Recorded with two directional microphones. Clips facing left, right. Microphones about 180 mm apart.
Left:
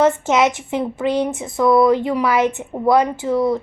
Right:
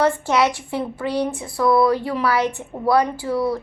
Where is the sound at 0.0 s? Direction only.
20° left (ahead or behind).